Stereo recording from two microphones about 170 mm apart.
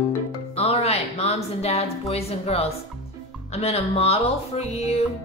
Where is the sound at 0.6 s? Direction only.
35° left (ahead or behind).